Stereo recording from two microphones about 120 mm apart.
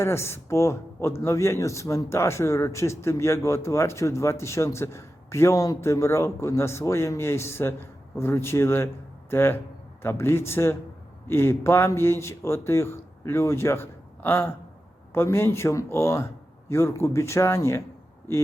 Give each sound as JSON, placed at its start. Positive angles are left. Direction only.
{"t": 0.0, "sound": "speech", "side_deg": 20}